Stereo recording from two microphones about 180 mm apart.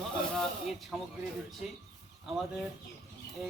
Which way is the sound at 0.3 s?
Centre (ahead or behind).